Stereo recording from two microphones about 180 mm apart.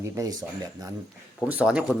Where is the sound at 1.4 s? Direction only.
5° right (ahead or behind).